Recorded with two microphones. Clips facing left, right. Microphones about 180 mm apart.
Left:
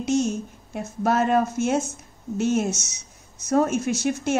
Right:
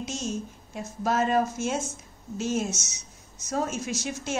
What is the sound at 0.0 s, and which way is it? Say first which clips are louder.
A woman's voice: left 9 dB; 60° left (ahead or behind).